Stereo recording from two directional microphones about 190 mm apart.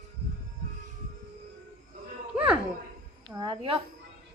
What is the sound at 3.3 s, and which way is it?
Speech, 20° right (ahead or behind).